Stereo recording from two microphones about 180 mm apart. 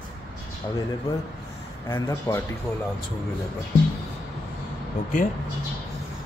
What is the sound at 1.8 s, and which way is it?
Speech, 20° left (ahead or behind).